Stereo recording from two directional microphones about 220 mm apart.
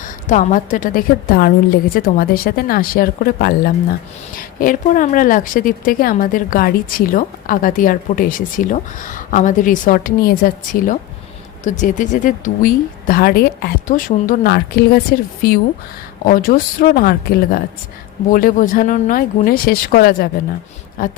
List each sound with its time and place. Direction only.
0.0 s a woman's voice: 35° left (ahead or behind)